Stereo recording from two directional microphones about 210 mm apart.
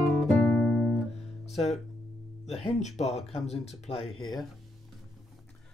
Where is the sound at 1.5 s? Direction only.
30° left (ahead or behind).